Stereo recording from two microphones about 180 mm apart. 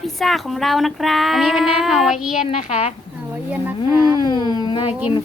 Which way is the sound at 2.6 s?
35° left (ahead or behind).